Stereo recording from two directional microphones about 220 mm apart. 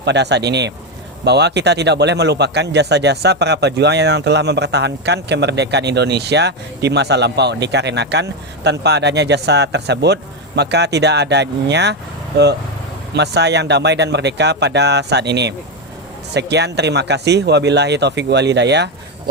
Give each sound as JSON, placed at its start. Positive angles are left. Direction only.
{"t": 0.0, "sound": "a man's voice", "side_deg": -50}
{"t": 13.1, "sound": "a man's voice", "side_deg": -50}